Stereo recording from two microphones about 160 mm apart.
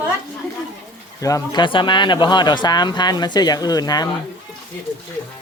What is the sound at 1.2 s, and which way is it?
Speech, 20° left (ahead or behind).